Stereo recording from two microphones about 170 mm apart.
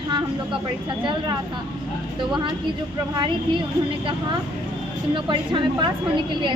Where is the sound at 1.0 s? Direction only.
25° right (ahead or behind).